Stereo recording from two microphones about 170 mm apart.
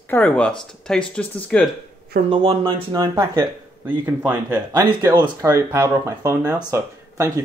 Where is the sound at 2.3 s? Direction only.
30° right (ahead or behind); by 4.6 s 10° right (ahead or behind).